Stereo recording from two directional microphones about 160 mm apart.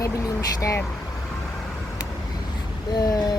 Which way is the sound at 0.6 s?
20° left (ahead or behind).